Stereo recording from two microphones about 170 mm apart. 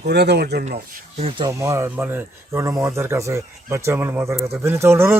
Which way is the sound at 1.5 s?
15° right (ahead or behind).